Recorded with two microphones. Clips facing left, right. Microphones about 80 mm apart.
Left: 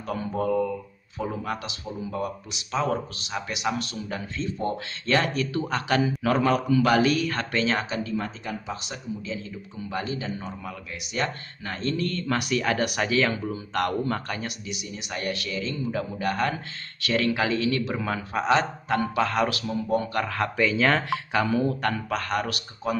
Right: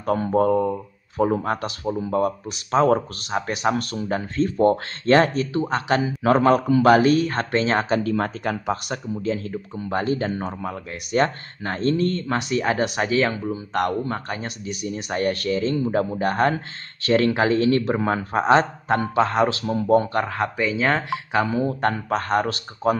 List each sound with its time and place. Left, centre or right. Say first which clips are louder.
0.0 s speech: right 8 dB; right
7.9 s speech: right 7 dB; right
14.7 s speech: right 7 dB; right
19.6 s speech: right 7 dB; right
20.1 s speech: right 3 dB; right